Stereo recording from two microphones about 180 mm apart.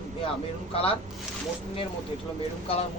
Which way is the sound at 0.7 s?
30° left (ahead or behind).